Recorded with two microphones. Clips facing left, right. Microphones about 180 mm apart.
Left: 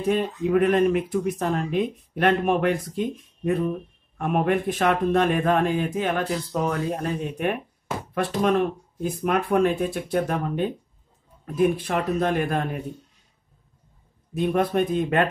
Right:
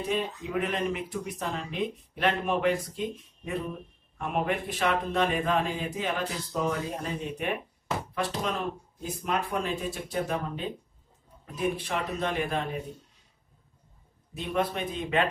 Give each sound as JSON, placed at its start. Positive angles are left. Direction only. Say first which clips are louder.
{"t": 0.1, "sound": "speech", "louder": "left 10 dB", "side_deg": 55}
{"t": 4.2, "sound": "speech", "louder": "left 7 dB", "side_deg": 55}
{"t": 14.3, "sound": "speech", "louder": "left 7 dB", "side_deg": 50}